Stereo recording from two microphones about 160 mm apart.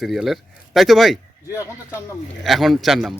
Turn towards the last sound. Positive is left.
turn(degrees=0)  # may be behind; listen again after turning